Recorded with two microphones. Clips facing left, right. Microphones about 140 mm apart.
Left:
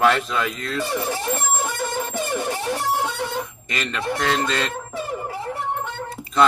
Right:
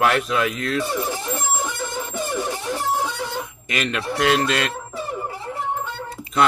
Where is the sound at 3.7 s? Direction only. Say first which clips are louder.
Right 1 dB; 10° right (ahead or behind).